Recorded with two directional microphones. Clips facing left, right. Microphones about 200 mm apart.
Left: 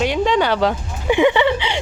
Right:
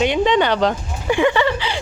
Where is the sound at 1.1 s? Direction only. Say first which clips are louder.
Left 2 dB; 15° left (ahead or behind).